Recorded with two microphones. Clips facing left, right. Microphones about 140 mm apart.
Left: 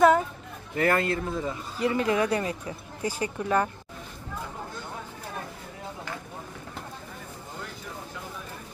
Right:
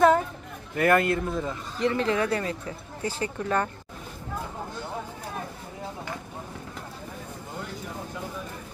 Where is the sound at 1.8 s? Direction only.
10° left (ahead or behind).